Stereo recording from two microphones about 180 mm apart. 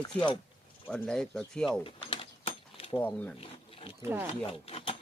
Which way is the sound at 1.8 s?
30° left (ahead or behind).